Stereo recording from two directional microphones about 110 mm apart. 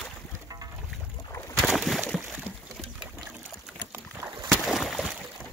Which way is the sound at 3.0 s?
5° right (ahead or behind).